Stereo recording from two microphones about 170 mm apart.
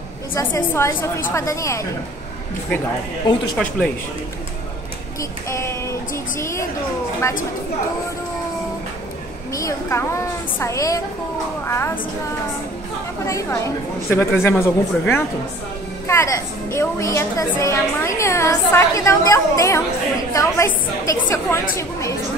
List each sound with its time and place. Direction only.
0.3 s a woman's voice: 15° left (ahead or behind)
3.6 s speech: 5° left (ahead or behind)
5.5 s a woman's voice: 15° left (ahead or behind)
9.5 s a woman's voice: 20° left (ahead or behind)
14.0 s a woman's voice: 15° left (ahead or behind)